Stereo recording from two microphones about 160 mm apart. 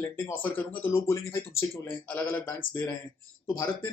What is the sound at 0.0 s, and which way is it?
Speech, 15° left (ahead or behind).